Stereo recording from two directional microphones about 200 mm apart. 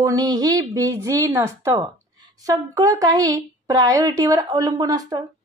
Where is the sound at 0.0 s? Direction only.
20° right (ahead or behind).